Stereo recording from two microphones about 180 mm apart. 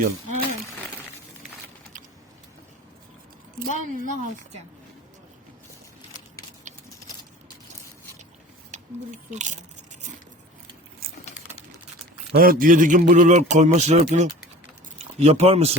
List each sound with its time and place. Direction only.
3.6 s a man's voice: 50° right (ahead or behind)
11.0 s a sound: 55° right (ahead or behind)
12.3 s a man's voice: 55° right (ahead or behind); by 15.7 s 35° right (ahead or behind)